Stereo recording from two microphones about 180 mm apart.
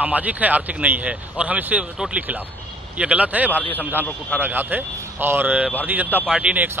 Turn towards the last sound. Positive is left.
turn(degrees=-5)  # may be behind; listen again after turning